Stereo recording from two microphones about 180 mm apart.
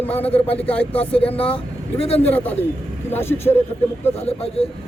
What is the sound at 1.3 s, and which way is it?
Speech, 30° left (ahead or behind).